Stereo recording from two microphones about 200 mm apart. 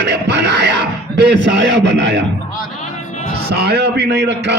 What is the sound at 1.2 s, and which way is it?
A man's voice, 60° right (ahead or behind).